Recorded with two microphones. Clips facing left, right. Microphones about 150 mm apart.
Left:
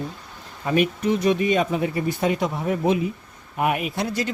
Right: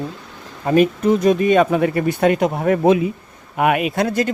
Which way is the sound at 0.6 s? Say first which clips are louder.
Right 6 dB; 40° right (ahead or behind).